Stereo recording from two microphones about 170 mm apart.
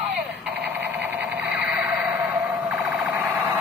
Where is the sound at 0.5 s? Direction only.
Centre (ahead or behind).